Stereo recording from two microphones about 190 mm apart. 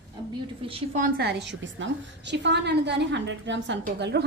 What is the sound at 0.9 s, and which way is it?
A woman's voice, 50° right (ahead or behind).